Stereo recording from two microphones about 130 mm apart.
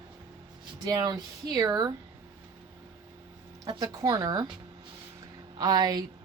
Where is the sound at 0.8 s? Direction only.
30° right (ahead or behind).